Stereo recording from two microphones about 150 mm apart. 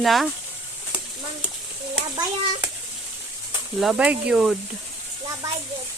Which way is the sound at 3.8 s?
5° right (ahead or behind).